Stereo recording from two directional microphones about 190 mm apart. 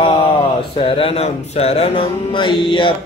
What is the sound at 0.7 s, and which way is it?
Music, 30° left (ahead or behind).